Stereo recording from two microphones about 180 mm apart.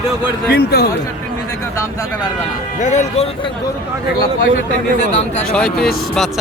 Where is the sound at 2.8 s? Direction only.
40° left (ahead or behind).